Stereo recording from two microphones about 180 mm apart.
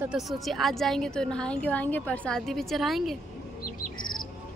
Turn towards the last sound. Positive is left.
turn(degrees=0)  # may be behind; listen again after turning